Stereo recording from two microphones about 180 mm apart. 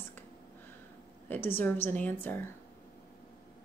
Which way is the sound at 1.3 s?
10° left (ahead or behind).